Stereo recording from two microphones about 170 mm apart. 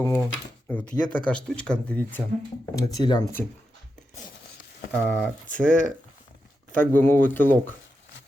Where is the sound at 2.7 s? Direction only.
25° left (ahead or behind).